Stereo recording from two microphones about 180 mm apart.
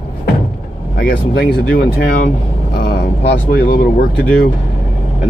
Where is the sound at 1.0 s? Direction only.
60° left (ahead or behind).